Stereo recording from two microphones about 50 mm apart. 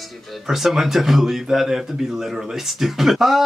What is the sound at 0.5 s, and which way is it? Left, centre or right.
Speech, centre.